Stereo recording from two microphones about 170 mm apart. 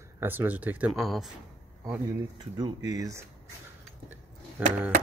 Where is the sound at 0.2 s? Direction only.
10° right (ahead or behind).